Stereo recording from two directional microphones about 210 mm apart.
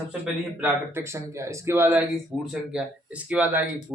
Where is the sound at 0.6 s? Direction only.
15° right (ahead or behind).